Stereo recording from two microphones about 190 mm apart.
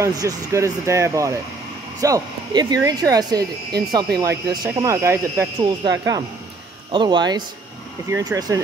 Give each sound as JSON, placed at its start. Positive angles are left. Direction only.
{"t": 0.0, "sound": "speech", "side_deg": -15}